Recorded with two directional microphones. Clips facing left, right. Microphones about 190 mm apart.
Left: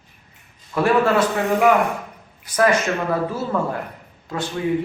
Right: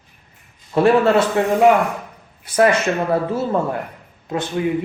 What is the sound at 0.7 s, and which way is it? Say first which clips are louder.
Speech: right 4 dB; 25° right (ahead or behind).